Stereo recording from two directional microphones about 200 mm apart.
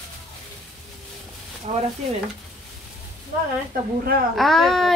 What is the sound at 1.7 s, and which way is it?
Speech, 35° right (ahead or behind).